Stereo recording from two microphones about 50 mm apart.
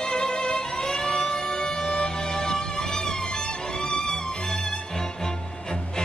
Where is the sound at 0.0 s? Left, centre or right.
Centre.